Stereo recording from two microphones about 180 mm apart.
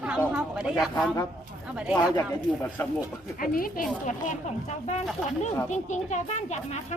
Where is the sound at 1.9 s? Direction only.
10° left (ahead or behind).